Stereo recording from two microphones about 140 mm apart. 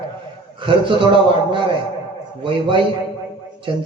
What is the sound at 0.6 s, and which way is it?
Speech, 35° right (ahead or behind).